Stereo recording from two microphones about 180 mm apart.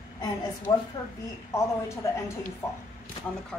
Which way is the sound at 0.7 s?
25° left (ahead or behind).